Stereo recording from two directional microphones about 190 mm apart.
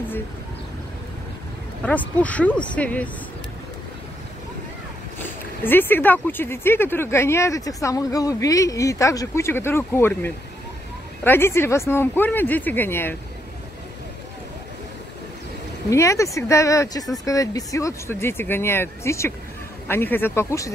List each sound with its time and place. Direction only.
1.8 s speech: 5° left (ahead or behind)
5.6 s speech: 10° left (ahead or behind)
15.9 s speech: 15° left (ahead or behind)